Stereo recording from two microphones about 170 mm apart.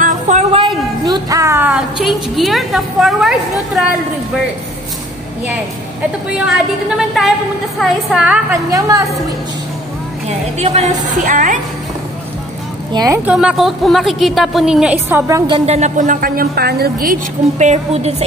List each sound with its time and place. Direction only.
0.0 s a sound: 45° right (ahead or behind)
1.0 s a woman's voice: 20° right (ahead or behind); by 3.8 s centre (ahead or behind)
7.2 s a woman's voice: centre (ahead or behind)
10.6 s a woman's voice: 40° right (ahead or behind)
11.2 s a woman's voice: 50° right (ahead or behind)
12.9 s a woman's voice: 20° right (ahead or behind)
13.2 s a woman's voice: 5° right (ahead or behind); by 15.6 s 25° right (ahead or behind)
15.6 s a woman's voice: 40° right (ahead or behind)